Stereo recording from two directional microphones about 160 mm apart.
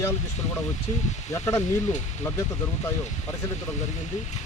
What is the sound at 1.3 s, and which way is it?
Speech, 15° left (ahead or behind).